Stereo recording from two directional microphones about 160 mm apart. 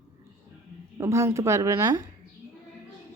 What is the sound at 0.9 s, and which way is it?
Speech, 20° right (ahead or behind).